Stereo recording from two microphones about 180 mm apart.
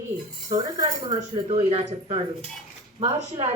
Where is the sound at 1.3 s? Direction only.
30° right (ahead or behind).